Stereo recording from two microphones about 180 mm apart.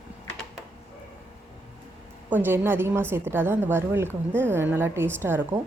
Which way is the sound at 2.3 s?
10° right (ahead or behind).